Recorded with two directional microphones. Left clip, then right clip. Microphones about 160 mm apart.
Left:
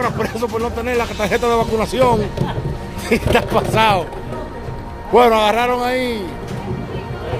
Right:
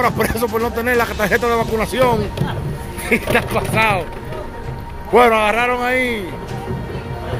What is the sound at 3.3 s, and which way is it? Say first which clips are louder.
Speech: left 2 dB; 30° left (ahead or behind).